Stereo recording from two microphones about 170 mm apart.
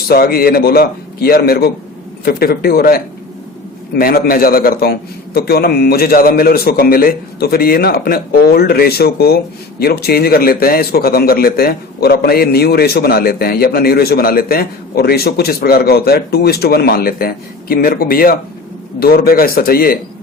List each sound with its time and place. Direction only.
0.1 s a man's voice: 60° left (ahead or behind)